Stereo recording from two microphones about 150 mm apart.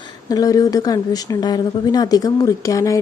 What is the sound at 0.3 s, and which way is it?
A woman's voice, 25° left (ahead or behind).